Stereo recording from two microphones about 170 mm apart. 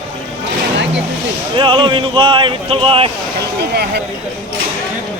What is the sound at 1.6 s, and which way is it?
Speech, 30° right (ahead or behind).